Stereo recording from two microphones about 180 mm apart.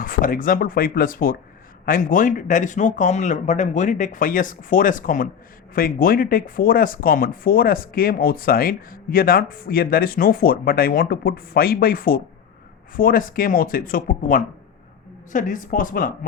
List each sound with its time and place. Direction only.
0.0 s speech: 50° left (ahead or behind)